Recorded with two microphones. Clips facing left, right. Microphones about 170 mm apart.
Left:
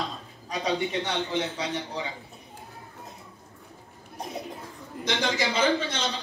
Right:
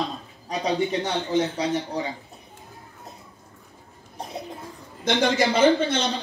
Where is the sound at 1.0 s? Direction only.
40° right (ahead or behind).